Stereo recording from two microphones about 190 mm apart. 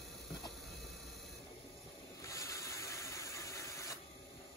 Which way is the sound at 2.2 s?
15° left (ahead or behind).